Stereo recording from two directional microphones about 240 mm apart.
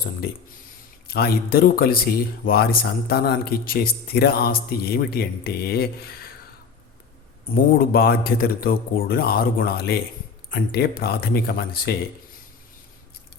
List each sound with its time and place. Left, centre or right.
1.0 s speech: left
7.5 s speech: left